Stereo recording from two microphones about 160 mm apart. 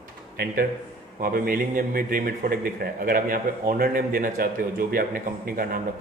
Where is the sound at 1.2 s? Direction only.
60° right (ahead or behind).